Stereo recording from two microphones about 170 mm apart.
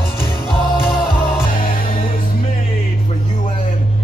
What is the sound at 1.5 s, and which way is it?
Music, 55° left (ahead or behind).